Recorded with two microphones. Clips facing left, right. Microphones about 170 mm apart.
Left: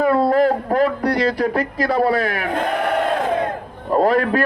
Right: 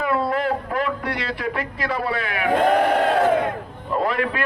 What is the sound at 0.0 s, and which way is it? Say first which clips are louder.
Speech: left 7 dB; 40° left (ahead or behind).